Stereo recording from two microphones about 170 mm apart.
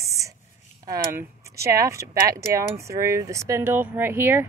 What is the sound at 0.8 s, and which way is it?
Speech, 15° right (ahead or behind).